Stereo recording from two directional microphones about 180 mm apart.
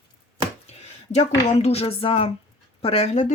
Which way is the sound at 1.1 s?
35° left (ahead or behind).